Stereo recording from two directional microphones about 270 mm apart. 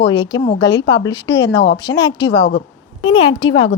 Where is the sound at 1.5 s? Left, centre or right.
Left.